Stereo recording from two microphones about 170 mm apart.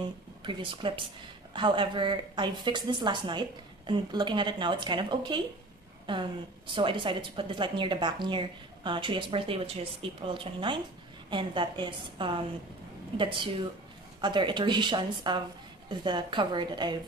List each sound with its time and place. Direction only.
0.4 s a woman's voice: 30° right (ahead or behind)